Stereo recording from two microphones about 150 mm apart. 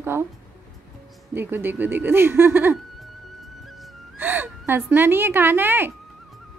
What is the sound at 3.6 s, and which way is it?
Music, centre (ahead or behind).